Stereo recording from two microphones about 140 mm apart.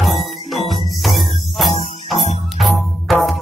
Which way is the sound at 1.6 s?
45° left (ahead or behind).